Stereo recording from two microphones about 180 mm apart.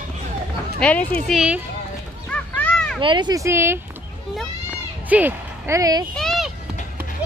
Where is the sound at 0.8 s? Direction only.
5° left (ahead or behind).